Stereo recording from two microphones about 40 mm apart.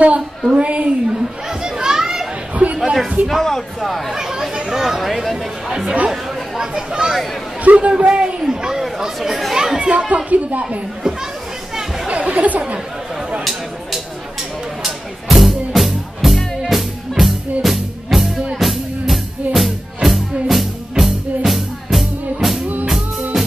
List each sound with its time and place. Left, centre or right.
0.5 s a man's voice: right
1.1 s children playing: centre
2.8 s a sound: centre
3.3 s speech: centre
4.1 s speech: centre
7.6 s a man's voice: right
8.4 s speech: centre
9.8 s speech: right
12.1 s speech: right
14.8 s music: centre